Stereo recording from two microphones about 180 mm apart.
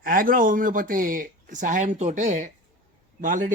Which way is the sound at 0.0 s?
50° right (ahead or behind).